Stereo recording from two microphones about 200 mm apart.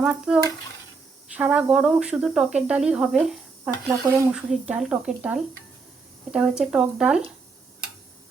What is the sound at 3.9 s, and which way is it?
A woman's voice, 15° right (ahead or behind).